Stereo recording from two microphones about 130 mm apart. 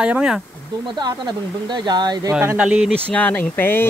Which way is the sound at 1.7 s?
35° right (ahead or behind).